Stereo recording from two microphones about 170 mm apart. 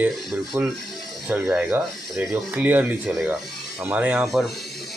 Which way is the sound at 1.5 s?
5° right (ahead or behind).